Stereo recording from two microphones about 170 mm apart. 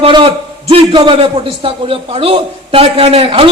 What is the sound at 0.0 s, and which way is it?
A man's voice, 30° right (ahead or behind).